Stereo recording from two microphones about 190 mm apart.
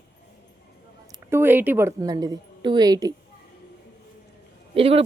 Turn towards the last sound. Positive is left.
turn(degrees=-30)  # may be behind; listen again after turning